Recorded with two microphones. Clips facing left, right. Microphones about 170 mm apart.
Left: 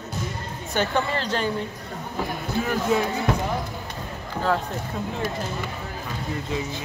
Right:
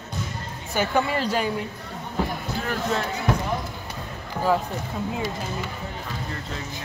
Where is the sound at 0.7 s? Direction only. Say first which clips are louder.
Right 1 dB; 10° right (ahead or behind).